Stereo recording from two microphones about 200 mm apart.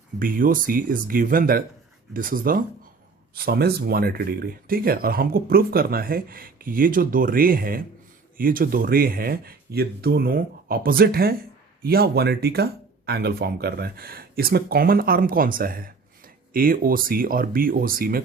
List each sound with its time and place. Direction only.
0.2 s speech: 45° right (ahead or behind)